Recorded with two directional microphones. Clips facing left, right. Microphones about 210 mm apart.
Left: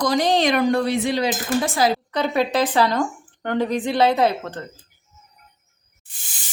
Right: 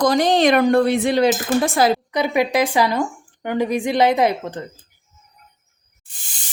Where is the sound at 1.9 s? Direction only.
15° right (ahead or behind).